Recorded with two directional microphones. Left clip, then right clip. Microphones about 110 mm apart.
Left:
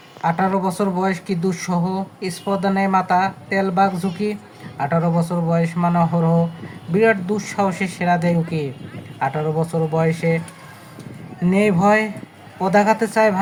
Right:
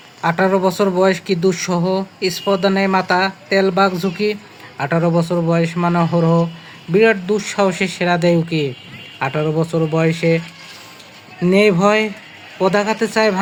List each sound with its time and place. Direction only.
0.2 s speech: 25° right (ahead or behind)
11.4 s speech: 25° right (ahead or behind)